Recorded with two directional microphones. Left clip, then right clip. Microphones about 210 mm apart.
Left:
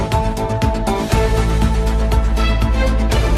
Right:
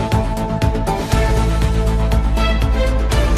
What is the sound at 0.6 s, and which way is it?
Music, centre (ahead or behind).